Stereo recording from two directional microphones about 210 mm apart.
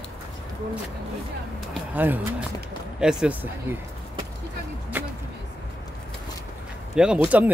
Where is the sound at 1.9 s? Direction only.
10° right (ahead or behind).